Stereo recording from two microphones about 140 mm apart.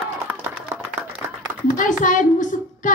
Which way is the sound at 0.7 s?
15° right (ahead or behind).